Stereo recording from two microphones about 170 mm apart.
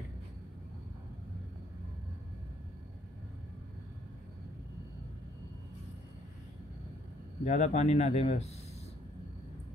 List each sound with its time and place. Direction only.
7.4 s speech: 45° left (ahead or behind)